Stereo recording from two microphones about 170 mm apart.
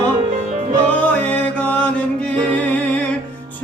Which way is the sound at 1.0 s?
5° left (ahead or behind).